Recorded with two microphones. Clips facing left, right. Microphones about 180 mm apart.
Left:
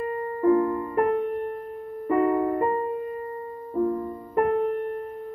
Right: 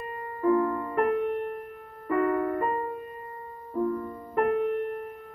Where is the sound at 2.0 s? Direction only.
25° left (ahead or behind).